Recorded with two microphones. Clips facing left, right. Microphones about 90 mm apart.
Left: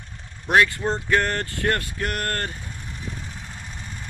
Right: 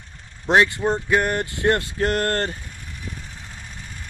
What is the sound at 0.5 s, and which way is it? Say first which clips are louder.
Speech: right 2 dB; 20° right (ahead or behind).